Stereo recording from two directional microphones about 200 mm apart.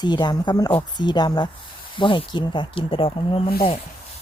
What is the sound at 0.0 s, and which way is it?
Speech, 20° left (ahead or behind).